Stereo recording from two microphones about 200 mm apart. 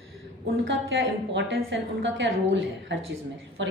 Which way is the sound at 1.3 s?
65° right (ahead or behind).